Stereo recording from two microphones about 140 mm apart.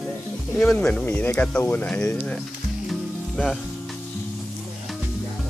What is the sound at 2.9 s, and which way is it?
Music, centre (ahead or behind).